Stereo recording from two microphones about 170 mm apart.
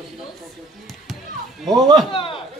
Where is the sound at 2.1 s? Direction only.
30° left (ahead or behind).